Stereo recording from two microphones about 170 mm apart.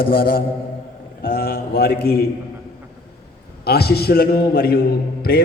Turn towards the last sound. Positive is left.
turn(degrees=65)  # may be behind; listen again after turning